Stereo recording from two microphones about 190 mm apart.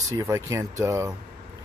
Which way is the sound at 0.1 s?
15° right (ahead or behind).